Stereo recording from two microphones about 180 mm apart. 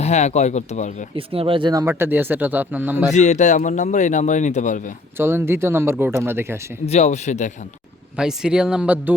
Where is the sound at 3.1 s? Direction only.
40° left (ahead or behind).